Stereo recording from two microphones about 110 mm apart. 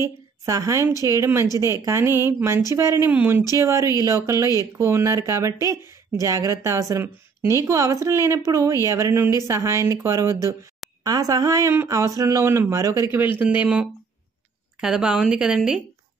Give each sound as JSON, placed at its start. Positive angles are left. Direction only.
{"t": 0.0, "sound": "a woman's voice", "side_deg": -30}
{"t": 3.1, "sound": "speech", "side_deg": -15}
{"t": 3.5, "sound": "speech", "side_deg": -25}
{"t": 13.4, "sound": "speech", "side_deg": -15}